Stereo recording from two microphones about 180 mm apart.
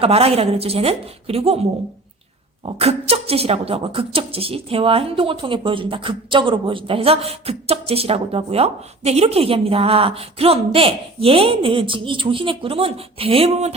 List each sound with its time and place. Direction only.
0.0 s speech: 35° right (ahead or behind)
2.6 s speech: 35° right (ahead or behind)